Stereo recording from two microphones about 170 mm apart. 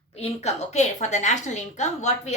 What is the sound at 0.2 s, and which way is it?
A woman's voice, 40° left (ahead or behind).